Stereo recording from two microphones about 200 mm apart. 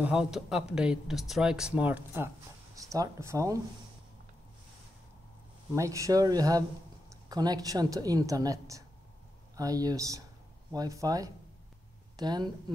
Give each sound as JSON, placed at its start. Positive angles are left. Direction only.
{"t": 0.0, "sound": "speech", "side_deg": -5}
{"t": 5.8, "sound": "a woman's voice", "side_deg": -15}